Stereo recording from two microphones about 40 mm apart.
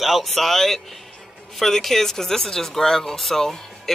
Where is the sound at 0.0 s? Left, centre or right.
Centre.